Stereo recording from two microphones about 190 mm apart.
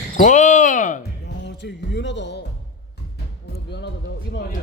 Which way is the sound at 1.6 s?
65° left (ahead or behind).